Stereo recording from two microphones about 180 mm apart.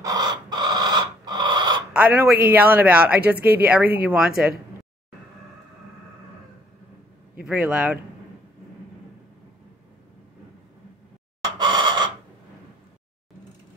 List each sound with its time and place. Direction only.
0.0 s a sound: 20° right (ahead or behind)
2.0 s speech: 10° right (ahead or behind)
7.4 s speech: 5° right (ahead or behind)
11.5 s chicken: 25° right (ahead or behind)